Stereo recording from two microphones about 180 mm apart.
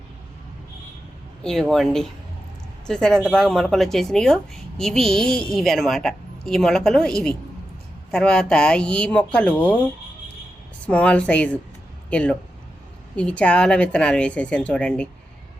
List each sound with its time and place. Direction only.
1.5 s a woman's voice: centre (ahead or behind)
10.8 s speech: 5° left (ahead or behind)